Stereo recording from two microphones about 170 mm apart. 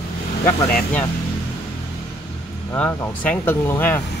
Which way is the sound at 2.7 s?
10° left (ahead or behind).